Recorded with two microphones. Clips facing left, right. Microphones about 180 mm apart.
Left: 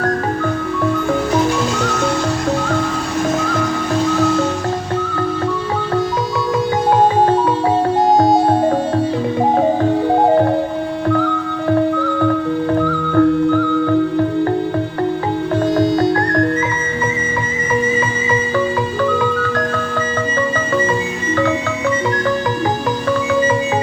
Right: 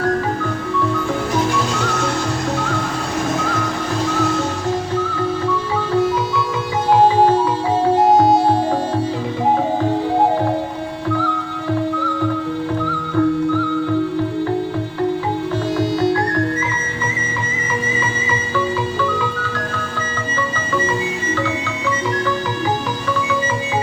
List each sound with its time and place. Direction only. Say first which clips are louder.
6.9 s music: right 2 dB; 55° left (ahead or behind)
11.9 s music: left 4 dB; 55° left (ahead or behind)
19.1 s music: left 6 dB; 55° left (ahead or behind)